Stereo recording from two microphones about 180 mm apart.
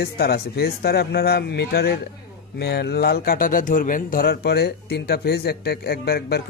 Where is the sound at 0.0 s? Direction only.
60° left (ahead or behind).